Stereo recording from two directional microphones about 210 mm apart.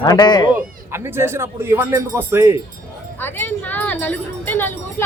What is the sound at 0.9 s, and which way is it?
A man's voice, 10° right (ahead or behind).